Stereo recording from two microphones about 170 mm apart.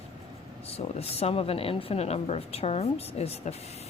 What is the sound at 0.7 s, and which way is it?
Speech, 35° left (ahead or behind).